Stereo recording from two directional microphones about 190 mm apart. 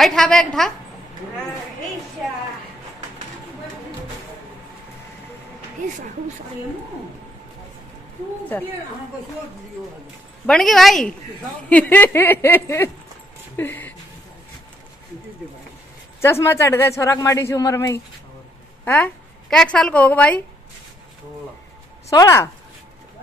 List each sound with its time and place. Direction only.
0.0 s speech: centre (ahead or behind)
10.4 s a man's voice: centre (ahead or behind)
16.2 s a man's voice: 15° left (ahead or behind)
22.1 s a man's voice: 15° left (ahead or behind)